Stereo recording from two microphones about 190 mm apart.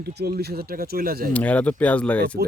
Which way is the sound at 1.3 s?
5° left (ahead or behind).